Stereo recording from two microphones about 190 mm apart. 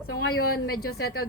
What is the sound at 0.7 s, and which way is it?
Speech, 55° left (ahead or behind).